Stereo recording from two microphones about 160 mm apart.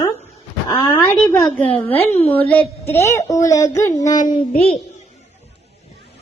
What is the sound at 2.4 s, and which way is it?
Child singing, 10° left (ahead or behind).